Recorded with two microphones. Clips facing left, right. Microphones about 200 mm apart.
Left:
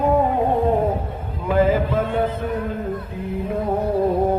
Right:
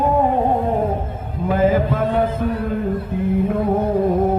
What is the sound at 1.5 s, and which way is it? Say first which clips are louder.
Music: right 1 dB; 45° right (ahead or behind).